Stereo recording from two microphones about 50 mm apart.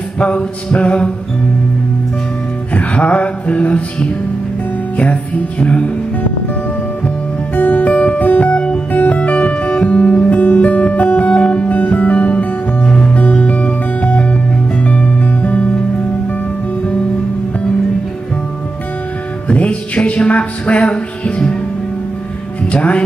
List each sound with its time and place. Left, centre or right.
0.2 s music: left
2.7 s music: left
7.5 s music: left
7.8 s music: left
12.4 s music: centre
19.4 s music: left
22.7 s music: left